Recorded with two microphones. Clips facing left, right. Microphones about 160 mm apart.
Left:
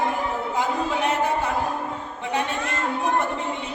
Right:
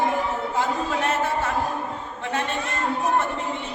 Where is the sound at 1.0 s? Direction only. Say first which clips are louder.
Left 1 dB; 15° left (ahead or behind).